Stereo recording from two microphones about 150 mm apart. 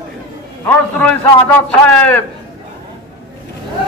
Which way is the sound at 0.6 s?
10° left (ahead or behind).